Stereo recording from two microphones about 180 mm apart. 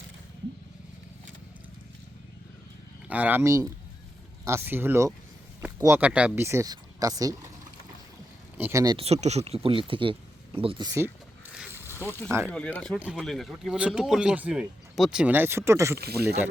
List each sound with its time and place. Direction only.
3.1 s speech: 10° right (ahead or behind)
9.0 s speech: 35° right (ahead or behind); by 11.1 s 20° right (ahead or behind)
11.9 s speech: 15° left (ahead or behind); by 16.0 s 15° right (ahead or behind)